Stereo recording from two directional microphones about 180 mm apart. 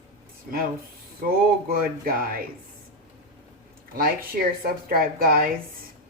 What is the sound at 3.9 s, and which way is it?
Speech, 55° right (ahead or behind).